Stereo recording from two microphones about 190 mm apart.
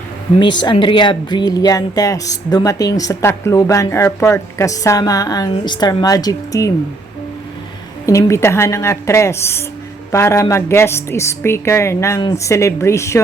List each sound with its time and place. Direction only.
0.3 s speech: 25° left (ahead or behind)
8.0 s a woman's voice: 15° left (ahead or behind)